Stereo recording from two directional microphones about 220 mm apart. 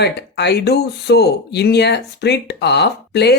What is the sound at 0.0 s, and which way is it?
Speech, 50° left (ahead or behind).